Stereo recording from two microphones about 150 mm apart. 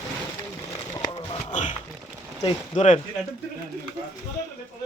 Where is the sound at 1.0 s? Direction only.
30° left (ahead or behind).